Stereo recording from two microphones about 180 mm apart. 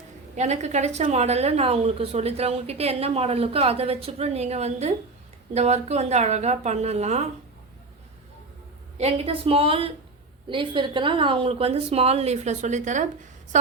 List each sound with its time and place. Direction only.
0.3 s a woman's voice: 40° right (ahead or behind)
9.0 s a woman's voice: 35° right (ahead or behind)